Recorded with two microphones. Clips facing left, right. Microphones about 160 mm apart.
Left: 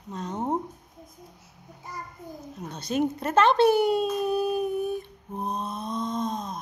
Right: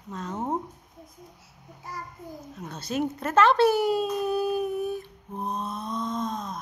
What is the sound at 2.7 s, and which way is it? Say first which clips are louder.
Speech: left 2 dB; 5° right (ahead or behind).